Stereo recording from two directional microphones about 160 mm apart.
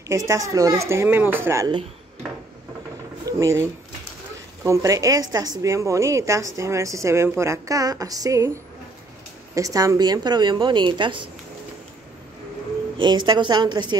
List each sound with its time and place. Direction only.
0.1 s speech: 20° right (ahead or behind)
3.3 s speech: 20° right (ahead or behind)
4.6 s speech: 20° right (ahead or behind)
9.6 s speech: 20° right (ahead or behind)
12.9 s speech: 30° right (ahead or behind)